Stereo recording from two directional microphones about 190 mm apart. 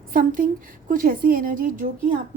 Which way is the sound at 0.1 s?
45° right (ahead or behind).